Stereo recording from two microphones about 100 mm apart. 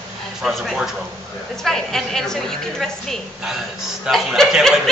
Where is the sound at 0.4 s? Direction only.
5° right (ahead or behind).